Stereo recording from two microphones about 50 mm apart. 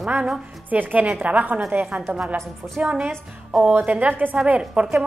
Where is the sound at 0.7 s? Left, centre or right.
Right.